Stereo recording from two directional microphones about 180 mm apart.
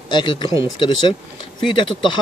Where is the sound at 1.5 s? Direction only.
25° left (ahead or behind).